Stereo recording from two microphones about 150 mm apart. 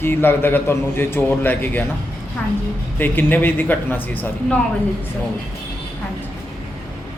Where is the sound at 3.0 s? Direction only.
15° left (ahead or behind).